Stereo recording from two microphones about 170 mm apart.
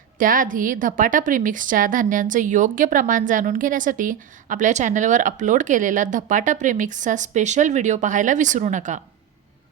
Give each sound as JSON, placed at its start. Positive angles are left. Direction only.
{"t": 0.2, "sound": "a woman's voice", "side_deg": -55}